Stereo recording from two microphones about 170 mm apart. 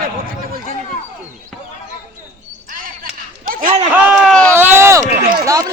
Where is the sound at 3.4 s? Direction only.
55° right (ahead or behind).